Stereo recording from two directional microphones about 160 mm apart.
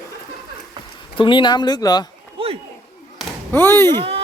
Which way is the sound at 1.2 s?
30° left (ahead or behind).